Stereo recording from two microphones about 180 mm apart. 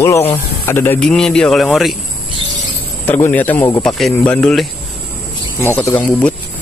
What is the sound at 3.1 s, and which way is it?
Speech, 10° left (ahead or behind).